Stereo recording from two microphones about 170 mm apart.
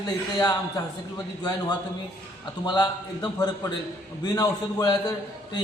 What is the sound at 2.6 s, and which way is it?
A man's voice, 25° left (ahead or behind).